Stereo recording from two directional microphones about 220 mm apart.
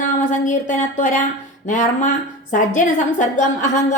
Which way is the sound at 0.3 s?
35° left (ahead or behind).